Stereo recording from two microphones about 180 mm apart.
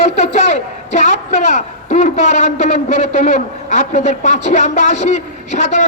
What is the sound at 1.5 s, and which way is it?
A man's voice, 40° left (ahead or behind).